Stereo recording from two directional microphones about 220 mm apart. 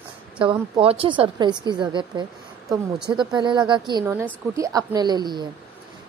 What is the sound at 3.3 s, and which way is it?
A woman's voice, 20° right (ahead or behind).